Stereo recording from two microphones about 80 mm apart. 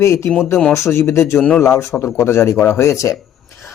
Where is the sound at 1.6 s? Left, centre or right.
Left.